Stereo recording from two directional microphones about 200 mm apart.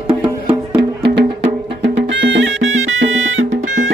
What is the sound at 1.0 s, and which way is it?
Music, 60° right (ahead or behind).